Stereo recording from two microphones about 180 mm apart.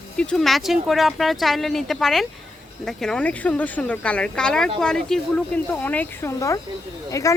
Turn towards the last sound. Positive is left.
turn(degrees=20)  # may be behind; listen again after turning